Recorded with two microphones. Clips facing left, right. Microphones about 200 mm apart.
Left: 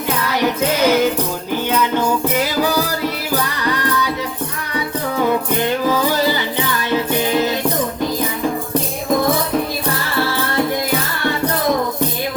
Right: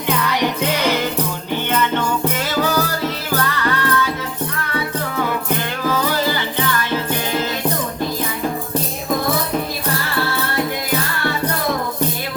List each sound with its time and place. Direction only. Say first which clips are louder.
0.8 s music: left 8 dB; 5° left (ahead or behind)
3.3 s music: right 1 dB; 15° left (ahead or behind)
5.5 s music: left 4 dB; 15° left (ahead or behind)